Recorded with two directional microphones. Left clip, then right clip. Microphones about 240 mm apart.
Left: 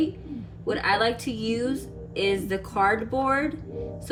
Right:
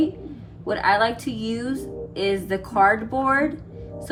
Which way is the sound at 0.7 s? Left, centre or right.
Centre.